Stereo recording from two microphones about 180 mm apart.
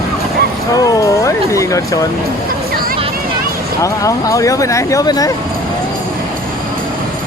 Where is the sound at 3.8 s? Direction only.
20° left (ahead or behind).